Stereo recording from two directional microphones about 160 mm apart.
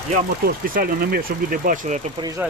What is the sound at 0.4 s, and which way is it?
Speech, 60° right (ahead or behind).